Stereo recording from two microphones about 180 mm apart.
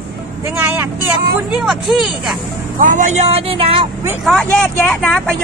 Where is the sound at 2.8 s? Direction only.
45° right (ahead or behind).